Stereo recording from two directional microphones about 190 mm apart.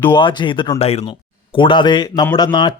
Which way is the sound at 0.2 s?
25° left (ahead or behind).